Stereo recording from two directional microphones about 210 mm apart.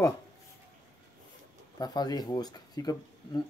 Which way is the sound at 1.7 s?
20° left (ahead or behind).